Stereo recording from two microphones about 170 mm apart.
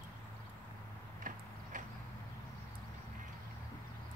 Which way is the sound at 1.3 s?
55° right (ahead or behind).